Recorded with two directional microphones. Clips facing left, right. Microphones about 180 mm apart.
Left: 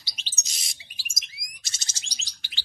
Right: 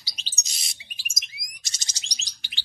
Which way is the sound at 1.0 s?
20° right (ahead or behind).